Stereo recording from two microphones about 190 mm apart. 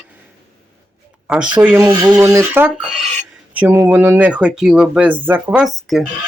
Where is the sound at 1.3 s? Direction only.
5° right (ahead or behind).